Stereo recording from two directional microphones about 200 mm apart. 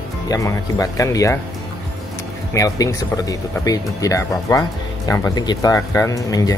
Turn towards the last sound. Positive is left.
turn(degrees=15)  # may be behind; listen again after turning